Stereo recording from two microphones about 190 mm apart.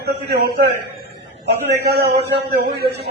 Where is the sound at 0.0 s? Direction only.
55° right (ahead or behind).